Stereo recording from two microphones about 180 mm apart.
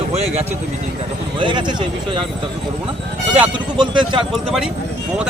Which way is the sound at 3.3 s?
25° right (ahead or behind).